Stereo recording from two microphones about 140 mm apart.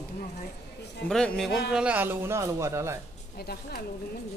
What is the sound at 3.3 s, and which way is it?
Speech, 90° left.